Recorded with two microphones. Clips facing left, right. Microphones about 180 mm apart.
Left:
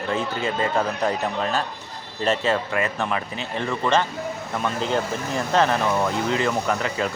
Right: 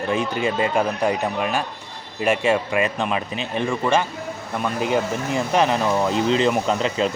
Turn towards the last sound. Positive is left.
turn(degrees=-20)  # may be behind; listen again after turning